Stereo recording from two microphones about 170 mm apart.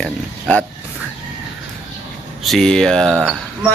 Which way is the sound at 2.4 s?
5° left (ahead or behind).